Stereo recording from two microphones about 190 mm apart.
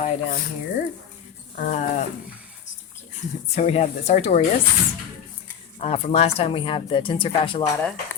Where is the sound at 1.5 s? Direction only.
45° left (ahead or behind).